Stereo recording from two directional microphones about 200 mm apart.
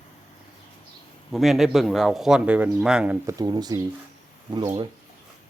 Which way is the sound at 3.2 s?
20° right (ahead or behind).